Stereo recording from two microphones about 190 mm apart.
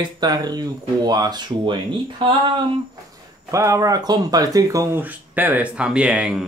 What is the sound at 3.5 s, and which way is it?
Speech, 15° right (ahead or behind).